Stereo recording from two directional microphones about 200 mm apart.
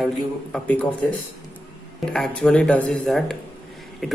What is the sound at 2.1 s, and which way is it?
Speech, 5° left (ahead or behind).